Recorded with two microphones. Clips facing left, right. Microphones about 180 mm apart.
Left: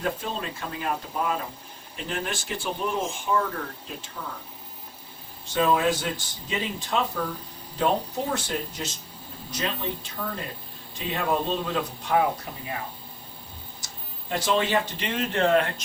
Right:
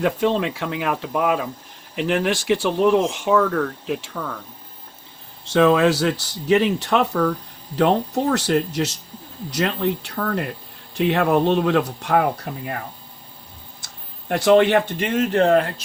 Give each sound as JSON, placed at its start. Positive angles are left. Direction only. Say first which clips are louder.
{"t": 0.0, "sound": "speech", "louder": "right 10 dB", "side_deg": -85}
{"t": 5.5, "sound": "speech", "louder": "right 7 dB", "side_deg": -80}
{"t": 13.8, "sound": "speech", "louder": "right 9 dB", "side_deg": -65}